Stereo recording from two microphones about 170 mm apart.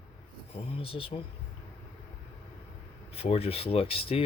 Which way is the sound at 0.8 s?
35° left (ahead or behind).